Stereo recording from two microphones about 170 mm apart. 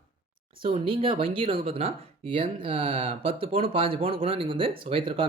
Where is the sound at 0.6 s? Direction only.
30° right (ahead or behind).